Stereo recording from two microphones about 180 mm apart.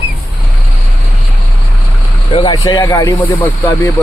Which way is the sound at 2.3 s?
25° left (ahead or behind).